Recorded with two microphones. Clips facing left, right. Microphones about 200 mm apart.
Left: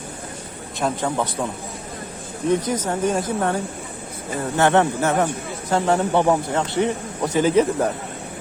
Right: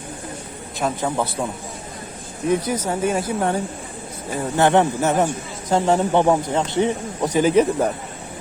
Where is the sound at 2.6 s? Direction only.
10° right (ahead or behind).